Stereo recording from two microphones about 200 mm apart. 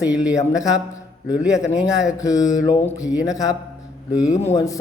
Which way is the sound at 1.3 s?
5° right (ahead or behind).